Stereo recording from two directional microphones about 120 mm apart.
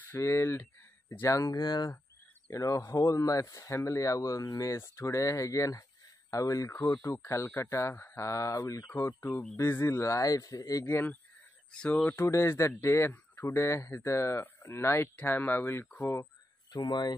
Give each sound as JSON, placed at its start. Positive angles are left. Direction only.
{"t": 0.1, "sound": "speech", "side_deg": 20}
{"t": 9.3, "sound": "speech", "side_deg": 10}
{"t": 9.6, "sound": "speech", "side_deg": 20}
{"t": 11.7, "sound": "speech", "side_deg": 10}